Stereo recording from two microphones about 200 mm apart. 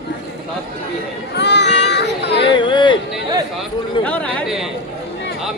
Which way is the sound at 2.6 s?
25° left (ahead or behind).